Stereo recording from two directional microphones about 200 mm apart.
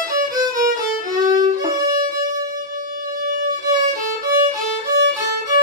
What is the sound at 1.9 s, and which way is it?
Music, 40° right (ahead or behind).